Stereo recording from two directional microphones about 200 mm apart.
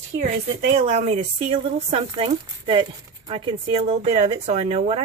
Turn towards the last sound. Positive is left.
turn(degrees=-30)  # may be behind; listen again after turning